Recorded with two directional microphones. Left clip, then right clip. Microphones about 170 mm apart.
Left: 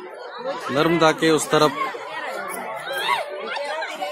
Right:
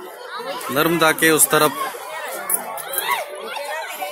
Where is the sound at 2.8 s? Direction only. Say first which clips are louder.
Left 1 dB; 30° right (ahead or behind).